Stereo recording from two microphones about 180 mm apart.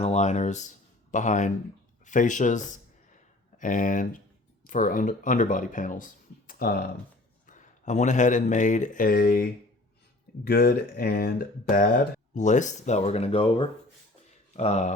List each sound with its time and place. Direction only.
0.0 s speech: 40° left (ahead or behind)
6.5 s speech: 55° left (ahead or behind)
7.4 s speech: 45° left (ahead or behind)